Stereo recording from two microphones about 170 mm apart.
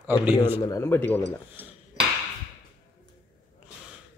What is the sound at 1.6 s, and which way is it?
Dishes, 10° right (ahead or behind).